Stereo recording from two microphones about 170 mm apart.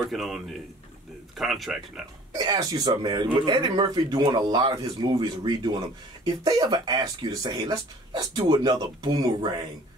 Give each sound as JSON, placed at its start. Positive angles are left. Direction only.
{"t": 0.1, "sound": "speech", "side_deg": 0}
{"t": 2.3, "sound": "speech", "side_deg": -25}